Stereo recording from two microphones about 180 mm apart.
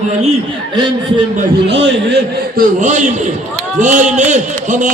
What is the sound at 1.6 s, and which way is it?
Speech, 80° right.